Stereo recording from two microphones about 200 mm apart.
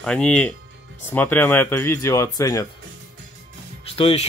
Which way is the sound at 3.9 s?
30° left (ahead or behind).